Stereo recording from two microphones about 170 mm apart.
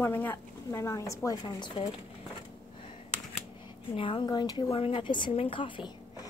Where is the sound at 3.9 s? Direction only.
30° left (ahead or behind).